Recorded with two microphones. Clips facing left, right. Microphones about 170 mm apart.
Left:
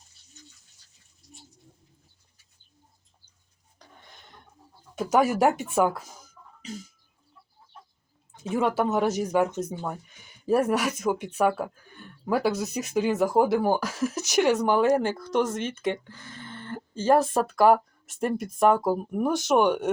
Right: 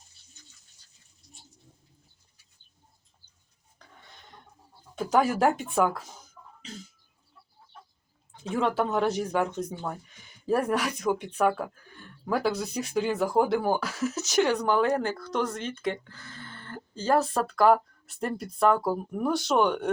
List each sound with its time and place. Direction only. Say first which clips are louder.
5.2 s speech: left 2 dB; 10° left (ahead or behind)
8.4 s speech: left 2 dB; 5° left (ahead or behind)
10.4 s speech: left 3 dB; 5° left (ahead or behind)
12.8 s speech: left 2 dB; 20° left (ahead or behind)
13.1 s speech: left 3 dB; 5° left (ahead or behind); by 17.4 s 25° left (ahead or behind)
17.5 s speech: left 1 dB; 10° left (ahead or behind)